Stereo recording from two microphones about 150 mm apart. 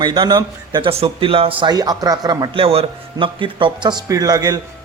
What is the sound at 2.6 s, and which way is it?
A man's voice, 40° right (ahead or behind).